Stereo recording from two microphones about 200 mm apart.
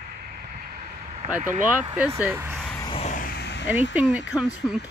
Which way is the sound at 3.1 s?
45° left (ahead or behind).